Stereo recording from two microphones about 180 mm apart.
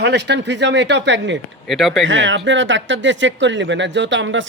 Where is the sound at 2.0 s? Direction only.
90° right.